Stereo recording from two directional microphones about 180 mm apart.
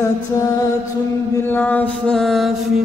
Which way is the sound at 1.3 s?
10° left (ahead or behind).